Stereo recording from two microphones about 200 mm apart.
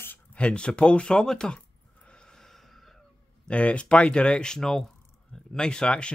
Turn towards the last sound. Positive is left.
turn(degrees=5)  # may be behind; listen again after turning